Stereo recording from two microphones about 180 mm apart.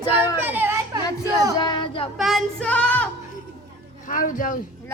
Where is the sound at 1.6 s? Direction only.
25° left (ahead or behind).